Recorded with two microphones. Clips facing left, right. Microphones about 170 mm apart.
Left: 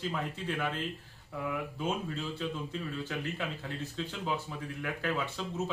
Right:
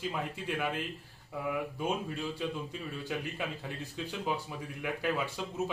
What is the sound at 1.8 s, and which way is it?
Speech, 10° right (ahead or behind).